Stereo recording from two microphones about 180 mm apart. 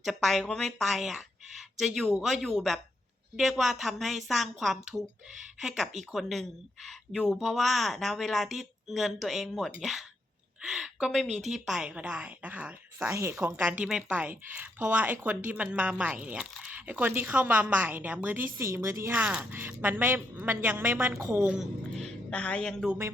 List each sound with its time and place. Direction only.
0.0 s a woman's voice: centre (ahead or behind)
22.3 s a woman's voice: 5° left (ahead or behind)